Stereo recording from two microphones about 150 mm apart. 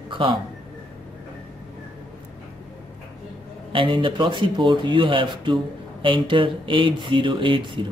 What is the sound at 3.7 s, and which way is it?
Speech, 35° right (ahead or behind).